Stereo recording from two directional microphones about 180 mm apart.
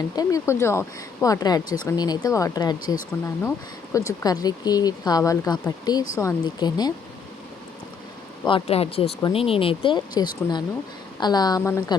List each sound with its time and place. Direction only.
0.2 s speech: 20° left (ahead or behind)
8.4 s speech: 30° left (ahead or behind)